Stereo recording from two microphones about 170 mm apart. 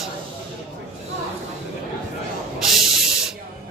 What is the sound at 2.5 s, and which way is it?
Spray, centre (ahead or behind).